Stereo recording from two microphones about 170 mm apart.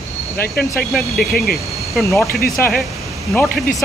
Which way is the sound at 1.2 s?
60° left (ahead or behind).